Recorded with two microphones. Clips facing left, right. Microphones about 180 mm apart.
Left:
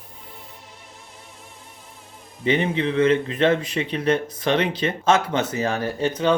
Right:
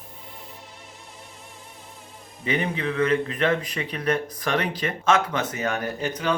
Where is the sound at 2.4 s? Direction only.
30° left (ahead or behind).